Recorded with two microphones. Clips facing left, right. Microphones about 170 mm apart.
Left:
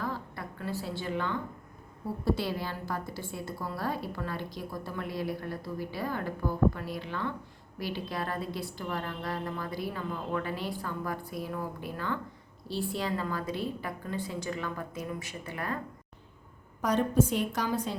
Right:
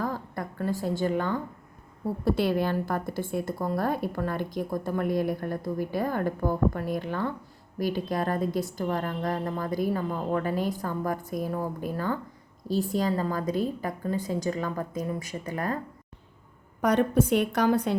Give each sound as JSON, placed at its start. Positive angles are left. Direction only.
{"t": 0.0, "sound": "a sound", "side_deg": -45}
{"t": 2.2, "sound": "a woman's voice", "side_deg": -55}
{"t": 16.8, "sound": "a woman's voice", "side_deg": -60}